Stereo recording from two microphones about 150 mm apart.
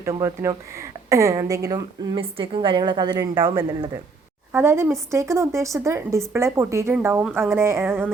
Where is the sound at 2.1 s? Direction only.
35° right (ahead or behind).